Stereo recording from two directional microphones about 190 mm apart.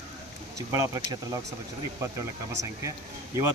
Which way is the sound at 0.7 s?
20° right (ahead or behind).